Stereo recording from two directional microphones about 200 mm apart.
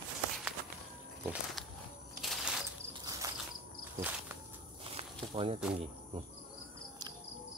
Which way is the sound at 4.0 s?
10° right (ahead or behind).